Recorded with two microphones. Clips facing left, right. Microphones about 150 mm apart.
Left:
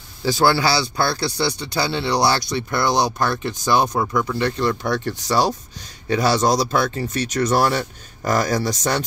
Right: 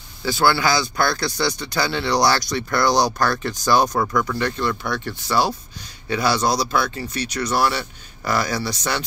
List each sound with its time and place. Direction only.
0.2 s speech: 40° left (ahead or behind)